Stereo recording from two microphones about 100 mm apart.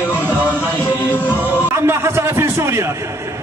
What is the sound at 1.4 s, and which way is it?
A man's voice, 20° right (ahead or behind).